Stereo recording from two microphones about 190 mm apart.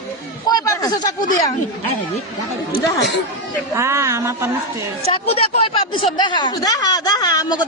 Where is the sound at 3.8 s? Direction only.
15° right (ahead or behind).